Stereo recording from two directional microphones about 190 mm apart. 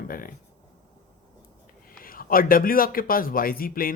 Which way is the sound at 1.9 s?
50° left (ahead or behind).